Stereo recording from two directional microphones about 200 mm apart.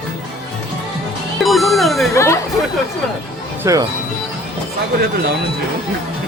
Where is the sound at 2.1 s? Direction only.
15° left (ahead or behind).